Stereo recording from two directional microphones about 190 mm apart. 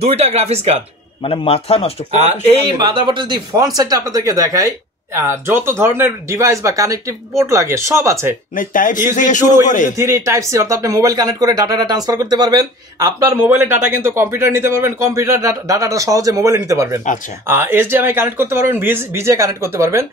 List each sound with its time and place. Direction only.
0.1 s speech: 35° right (ahead or behind)
1.2 s a man's voice: 30° left (ahead or behind)
2.8 s speech: 25° right (ahead or behind)
8.5 s a man's voice: 45° left (ahead or behind)
9.9 s speech: 15° right (ahead or behind)